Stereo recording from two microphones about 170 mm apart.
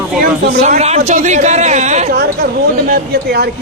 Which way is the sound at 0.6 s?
40° right (ahead or behind).